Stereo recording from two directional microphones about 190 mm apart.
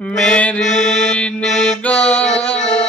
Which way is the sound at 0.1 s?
5° left (ahead or behind).